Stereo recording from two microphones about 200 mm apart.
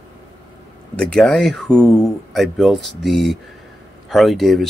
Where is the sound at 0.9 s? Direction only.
5° left (ahead or behind).